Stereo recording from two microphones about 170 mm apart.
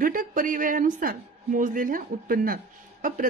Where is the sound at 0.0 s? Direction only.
55° right (ahead or behind).